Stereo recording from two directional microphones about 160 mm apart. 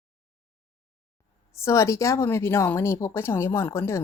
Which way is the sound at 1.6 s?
20° left (ahead or behind).